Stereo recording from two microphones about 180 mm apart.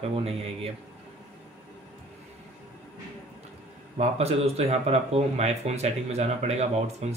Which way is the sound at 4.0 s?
35° right (ahead or behind).